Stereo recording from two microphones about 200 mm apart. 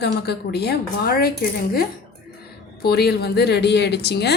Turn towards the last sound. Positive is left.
turn(degrees=55)  # may be behind; listen again after turning